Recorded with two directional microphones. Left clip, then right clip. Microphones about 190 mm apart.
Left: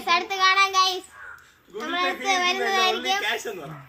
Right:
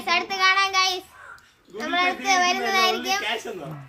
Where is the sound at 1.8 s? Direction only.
10° right (ahead or behind).